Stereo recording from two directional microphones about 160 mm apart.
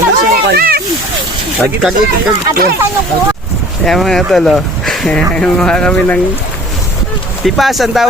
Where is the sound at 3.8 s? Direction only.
Centre (ahead or behind).